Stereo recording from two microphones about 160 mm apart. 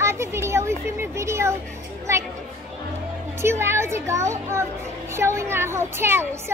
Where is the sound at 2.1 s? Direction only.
20° right (ahead or behind).